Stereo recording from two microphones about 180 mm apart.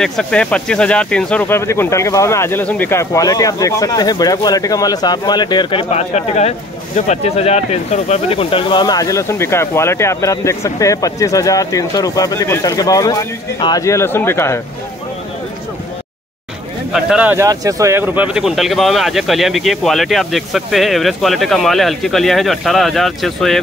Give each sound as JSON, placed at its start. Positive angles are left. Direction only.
{"t": 0.0, "sound": "speech", "side_deg": 5}
{"t": 16.9, "sound": "speech", "side_deg": -5}